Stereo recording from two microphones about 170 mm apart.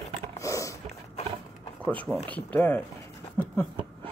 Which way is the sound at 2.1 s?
10° left (ahead or behind).